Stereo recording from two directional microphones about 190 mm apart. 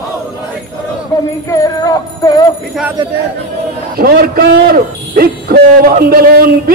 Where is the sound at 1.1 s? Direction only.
20° left (ahead or behind).